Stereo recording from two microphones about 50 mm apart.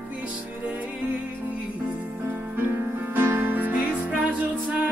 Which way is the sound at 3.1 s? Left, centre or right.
Right.